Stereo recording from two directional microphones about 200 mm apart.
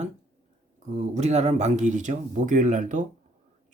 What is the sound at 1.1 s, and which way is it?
Speech, 35° right (ahead or behind).